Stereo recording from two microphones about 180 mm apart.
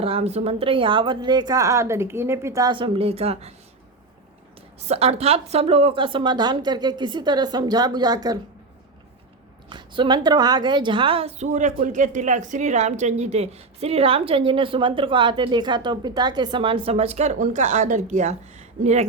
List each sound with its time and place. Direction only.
0.0 s a woman's voice: 35° right (ahead or behind)
4.9 s a woman's voice: 35° right (ahead or behind)
9.6 s a woman's voice: 25° right (ahead or behind)